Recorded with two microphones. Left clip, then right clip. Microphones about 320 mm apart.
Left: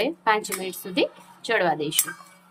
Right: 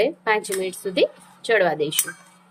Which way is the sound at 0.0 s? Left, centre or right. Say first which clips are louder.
Right 2 dB; centre.